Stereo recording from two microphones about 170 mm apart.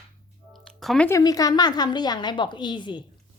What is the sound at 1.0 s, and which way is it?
A woman's voice, 20° left (ahead or behind).